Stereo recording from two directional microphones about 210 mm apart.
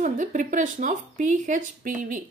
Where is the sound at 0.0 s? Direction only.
35° right (ahead or behind).